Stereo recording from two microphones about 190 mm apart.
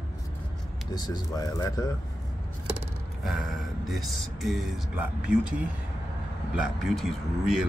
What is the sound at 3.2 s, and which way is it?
Speech, centre (ahead or behind).